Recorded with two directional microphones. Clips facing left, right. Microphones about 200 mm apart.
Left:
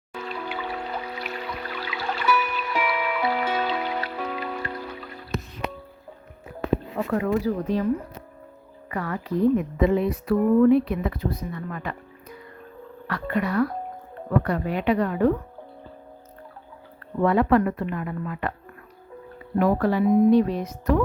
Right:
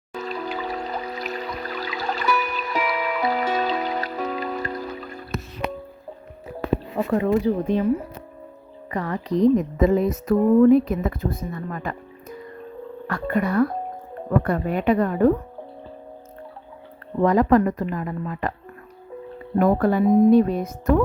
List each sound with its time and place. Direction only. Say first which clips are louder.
0.1 s music: right 3 dB; 40° right (ahead or behind)
6.9 s speech: right 6 dB; 25° right (ahead or behind)
7.7 s speech: right 1 dB; 10° right (ahead or behind)
8.9 s speech: right 3 dB; 35° right (ahead or behind)
10.3 s speech: right 3 dB; 35° right (ahead or behind)
13.1 s speech: right 3 dB; 45° right (ahead or behind)
17.2 s speech: right 2 dB; 40° right (ahead or behind)
19.5 s speech: right 2 dB; 50° right (ahead or behind)